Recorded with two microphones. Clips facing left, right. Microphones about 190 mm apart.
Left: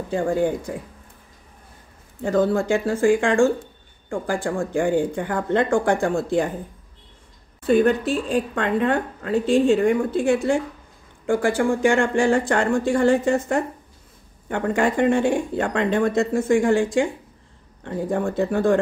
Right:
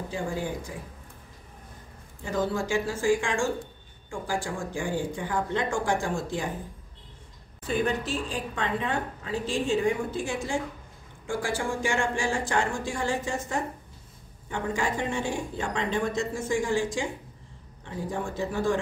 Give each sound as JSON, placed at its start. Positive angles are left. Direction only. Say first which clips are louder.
{"t": 0.1, "sound": "a woman's voice", "louder": "left 12 dB", "side_deg": 55}
{"t": 2.2, "sound": "a woman's voice", "louder": "left 9 dB", "side_deg": 55}
{"t": 7.6, "sound": "a woman's voice", "louder": "left 10 dB", "side_deg": 60}